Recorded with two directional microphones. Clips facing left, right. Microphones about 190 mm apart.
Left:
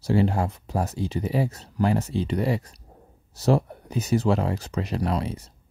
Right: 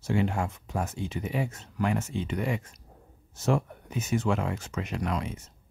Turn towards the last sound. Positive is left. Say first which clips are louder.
# left 5 dB
turn(degrees=35)  # may be behind; listen again after turning